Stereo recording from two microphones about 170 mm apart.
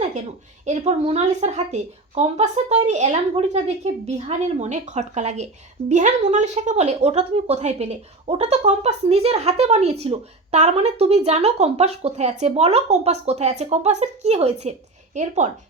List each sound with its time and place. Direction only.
0.6 s a woman's voice: 40° right (ahead or behind)